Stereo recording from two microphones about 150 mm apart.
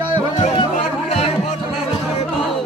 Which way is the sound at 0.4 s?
40° left (ahead or behind).